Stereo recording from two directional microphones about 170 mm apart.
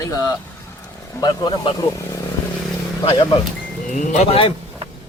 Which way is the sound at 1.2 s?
25° left (ahead or behind).